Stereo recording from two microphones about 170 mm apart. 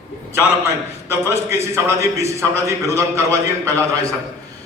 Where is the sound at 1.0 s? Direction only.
15° right (ahead or behind).